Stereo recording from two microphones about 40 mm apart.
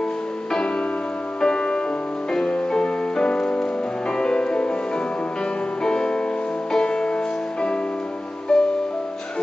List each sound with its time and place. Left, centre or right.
1.4 s music: left
5.9 s music: left
8.5 s music: centre